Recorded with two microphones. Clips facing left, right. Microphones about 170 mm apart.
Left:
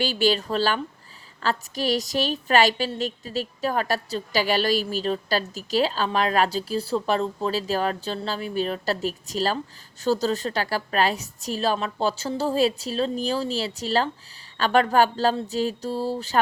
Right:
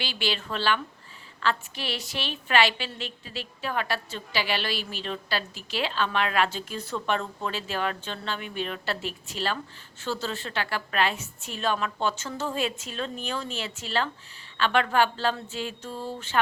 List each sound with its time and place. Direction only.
0.0 s a woman's voice: 40° left (ahead or behind)